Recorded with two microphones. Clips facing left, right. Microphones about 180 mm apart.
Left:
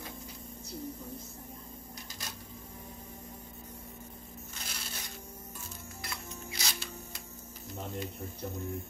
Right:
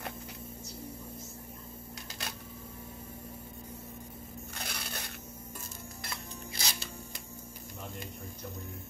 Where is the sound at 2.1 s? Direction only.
70° right (ahead or behind).